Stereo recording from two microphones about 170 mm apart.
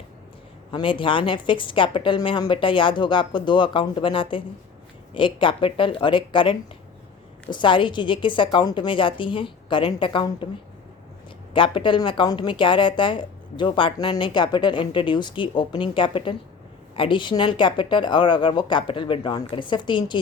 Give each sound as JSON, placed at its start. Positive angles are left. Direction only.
{"t": 0.7, "sound": "a woman's voice", "side_deg": 30}
{"t": 11.5, "sound": "a woman's voice", "side_deg": 30}